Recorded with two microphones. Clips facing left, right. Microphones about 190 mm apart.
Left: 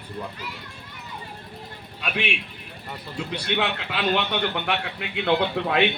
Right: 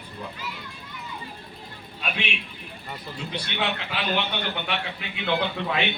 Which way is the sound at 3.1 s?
65° left (ahead or behind).